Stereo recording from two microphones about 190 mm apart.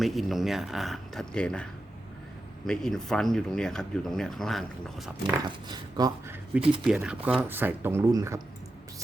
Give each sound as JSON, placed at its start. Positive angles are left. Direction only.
{"t": 0.0, "sound": "speech", "side_deg": 0}
{"t": 2.6, "sound": "speech", "side_deg": 5}
{"t": 5.5, "sound": "speech", "side_deg": -20}
{"t": 6.8, "sound": "speech", "side_deg": -5}